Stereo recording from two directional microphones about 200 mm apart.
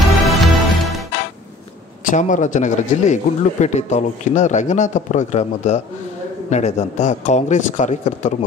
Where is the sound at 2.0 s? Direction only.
40° left (ahead or behind).